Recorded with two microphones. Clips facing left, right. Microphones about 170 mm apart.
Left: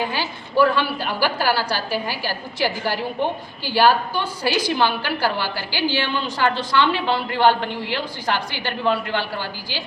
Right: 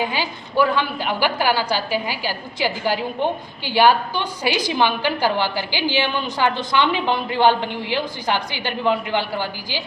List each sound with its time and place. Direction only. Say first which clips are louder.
0.0 s a woman's voice: right 1 dB; 15° right (ahead or behind)